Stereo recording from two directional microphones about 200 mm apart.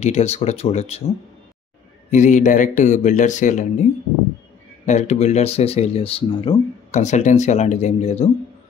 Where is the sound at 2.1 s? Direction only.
40° left (ahead or behind).